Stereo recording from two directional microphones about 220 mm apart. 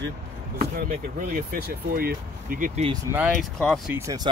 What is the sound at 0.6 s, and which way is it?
Speech, 40° right (ahead or behind).